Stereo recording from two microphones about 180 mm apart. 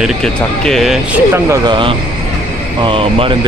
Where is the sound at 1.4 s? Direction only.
25° right (ahead or behind).